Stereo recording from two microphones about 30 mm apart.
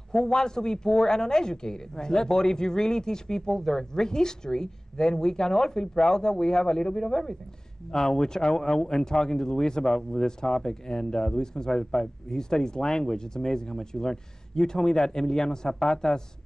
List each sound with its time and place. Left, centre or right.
0.1 s a woman's voice: left